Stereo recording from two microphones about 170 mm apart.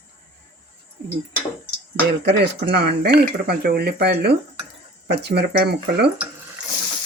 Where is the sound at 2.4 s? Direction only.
75° right (ahead or behind).